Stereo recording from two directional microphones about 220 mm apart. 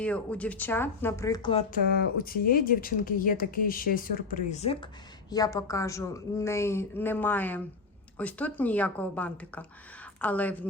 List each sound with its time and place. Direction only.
0.0 s a woman's voice: 5° left (ahead or behind); by 1.6 s 20° left (ahead or behind)
1.9 s speech: 40° left (ahead or behind)
5.3 s a woman's voice: 15° left (ahead or behind)